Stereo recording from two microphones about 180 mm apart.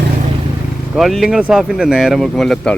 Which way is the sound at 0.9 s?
Centre (ahead or behind).